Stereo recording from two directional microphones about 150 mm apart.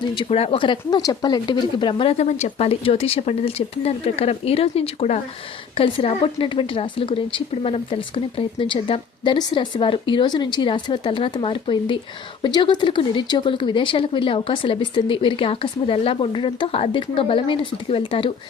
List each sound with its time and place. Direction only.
0.1 s a woman's voice: 35° left (ahead or behind)